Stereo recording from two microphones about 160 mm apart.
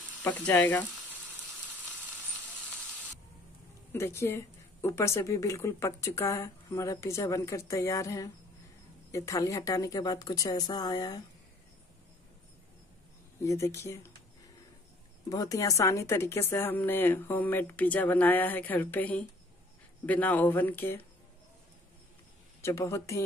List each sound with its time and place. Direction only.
0.2 s speech: 10° left (ahead or behind)
3.9 s a woman's voice: 15° left (ahead or behind)
13.4 s speech: 15° left (ahead or behind)
15.2 s speech: 20° left (ahead or behind)
22.6 s speech: 15° left (ahead or behind)